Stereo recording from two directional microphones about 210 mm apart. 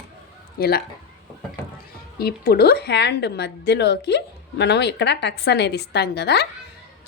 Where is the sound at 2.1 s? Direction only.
45° left (ahead or behind).